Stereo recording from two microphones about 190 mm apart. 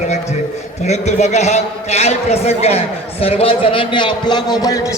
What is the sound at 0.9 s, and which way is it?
A man's voice, 35° left (ahead or behind).